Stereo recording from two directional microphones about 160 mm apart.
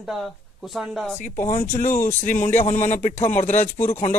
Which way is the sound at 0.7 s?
Centre (ahead or behind).